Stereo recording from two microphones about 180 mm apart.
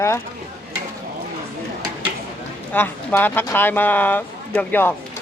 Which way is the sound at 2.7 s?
10° left (ahead or behind).